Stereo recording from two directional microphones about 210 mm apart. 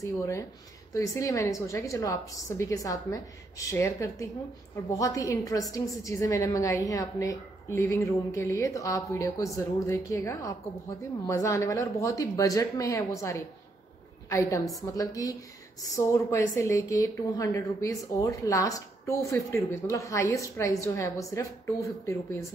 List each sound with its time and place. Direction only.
0.0 s a woman's voice: 15° left (ahead or behind)